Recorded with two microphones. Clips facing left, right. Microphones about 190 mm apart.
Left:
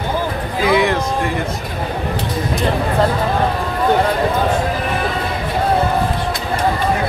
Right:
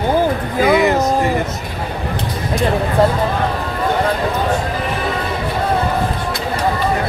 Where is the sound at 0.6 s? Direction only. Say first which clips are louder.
Right 2 dB; 50° right (ahead or behind).